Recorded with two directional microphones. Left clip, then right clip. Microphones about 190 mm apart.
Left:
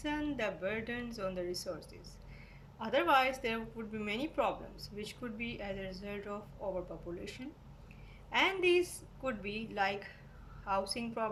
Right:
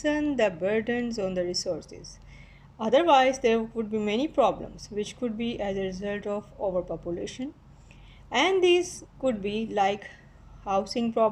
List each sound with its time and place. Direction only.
0.0 s a woman's voice: 35° right (ahead or behind)
2.7 s a woman's voice: 40° right (ahead or behind)